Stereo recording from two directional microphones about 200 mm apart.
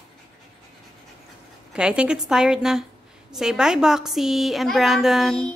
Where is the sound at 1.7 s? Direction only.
5° right (ahead or behind).